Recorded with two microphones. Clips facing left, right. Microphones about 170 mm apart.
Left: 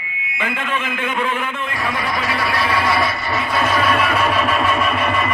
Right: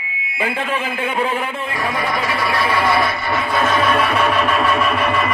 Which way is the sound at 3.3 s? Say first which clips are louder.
Right 2 dB; 10° left (ahead or behind).